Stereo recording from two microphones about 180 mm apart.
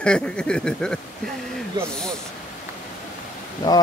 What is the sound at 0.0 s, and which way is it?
Speech, 5° left (ahead or behind).